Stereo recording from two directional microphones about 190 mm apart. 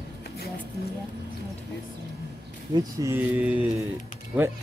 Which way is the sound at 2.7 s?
15° right (ahead or behind).